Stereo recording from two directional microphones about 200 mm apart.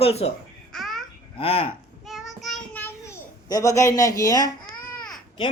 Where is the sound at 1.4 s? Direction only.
35° left (ahead or behind).